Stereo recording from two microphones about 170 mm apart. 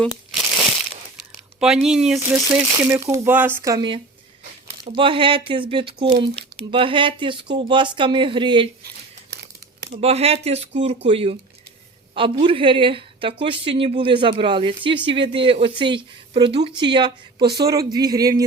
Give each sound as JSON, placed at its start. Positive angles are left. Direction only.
{"t": 1.5, "sound": "speech", "side_deg": -5}
{"t": 2.1, "sound": "speech", "side_deg": -15}
{"t": 9.9, "sound": "speech", "side_deg": -35}
{"t": 17.4, "sound": "speech", "side_deg": -70}
{"t": 17.7, "sound": "speech", "side_deg": -20}